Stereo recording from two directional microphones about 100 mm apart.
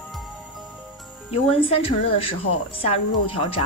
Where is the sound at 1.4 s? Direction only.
70° left (ahead or behind).